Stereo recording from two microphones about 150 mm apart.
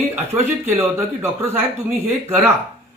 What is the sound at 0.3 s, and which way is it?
A man's voice, 20° right (ahead or behind).